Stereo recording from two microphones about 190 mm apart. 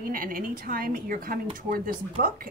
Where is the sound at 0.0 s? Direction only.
50° right (ahead or behind).